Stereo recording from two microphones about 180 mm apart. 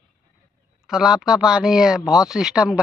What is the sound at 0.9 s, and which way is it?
Speech, 5° right (ahead or behind).